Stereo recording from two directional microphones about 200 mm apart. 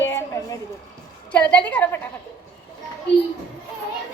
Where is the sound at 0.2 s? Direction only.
15° left (ahead or behind).